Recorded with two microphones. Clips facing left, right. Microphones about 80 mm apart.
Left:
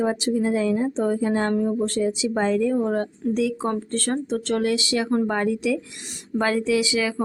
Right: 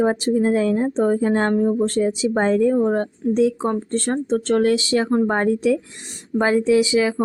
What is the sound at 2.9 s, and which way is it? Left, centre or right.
Speech, right.